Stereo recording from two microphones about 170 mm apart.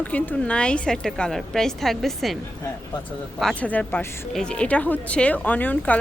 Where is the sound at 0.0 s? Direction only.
10° left (ahead or behind).